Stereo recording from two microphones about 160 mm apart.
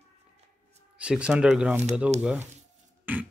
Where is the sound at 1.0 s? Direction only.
5° right (ahead or behind).